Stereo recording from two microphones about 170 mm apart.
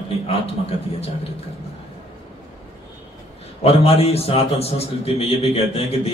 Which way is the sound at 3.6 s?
35° left (ahead or behind).